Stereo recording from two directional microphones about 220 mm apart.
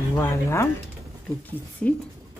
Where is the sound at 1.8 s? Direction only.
5° left (ahead or behind).